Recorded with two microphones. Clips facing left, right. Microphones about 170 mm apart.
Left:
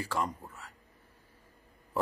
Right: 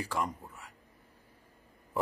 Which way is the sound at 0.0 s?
15° right (ahead or behind).